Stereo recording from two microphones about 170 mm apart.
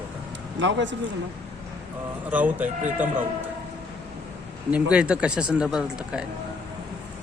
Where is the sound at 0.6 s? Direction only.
90° right.